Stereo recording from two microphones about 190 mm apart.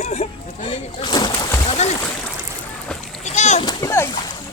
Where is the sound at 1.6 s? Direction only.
35° left (ahead or behind).